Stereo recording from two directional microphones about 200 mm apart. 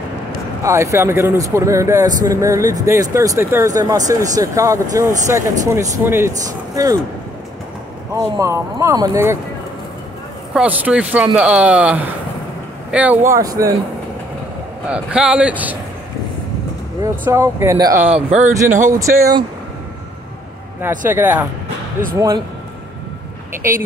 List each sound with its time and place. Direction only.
0.7 s speech: 15° right (ahead or behind)
8.1 s speech: 15° right (ahead or behind)
10.5 s speech: 5° right (ahead or behind)
14.9 s speech: 5° right (ahead or behind)
17.0 s speech: 15° right (ahead or behind)
18.1 s speech: 35° right (ahead or behind)
18.9 s speech: 15° right (ahead or behind)
21.1 s speech: 10° right (ahead or behind)